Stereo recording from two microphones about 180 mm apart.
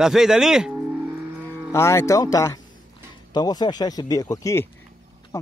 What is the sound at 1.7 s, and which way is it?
Speech, 15° left (ahead or behind).